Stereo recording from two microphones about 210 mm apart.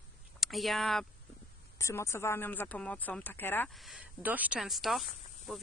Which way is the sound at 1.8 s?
15° left (ahead or behind).